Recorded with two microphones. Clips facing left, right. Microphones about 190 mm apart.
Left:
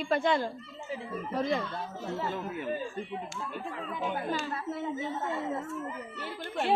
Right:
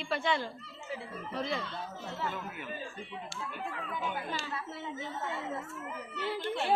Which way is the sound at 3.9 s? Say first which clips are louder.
Left 6 dB; 40° left (ahead or behind).